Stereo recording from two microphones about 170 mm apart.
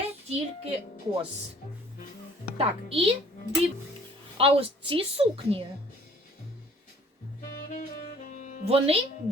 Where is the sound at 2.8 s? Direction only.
35° right (ahead or behind).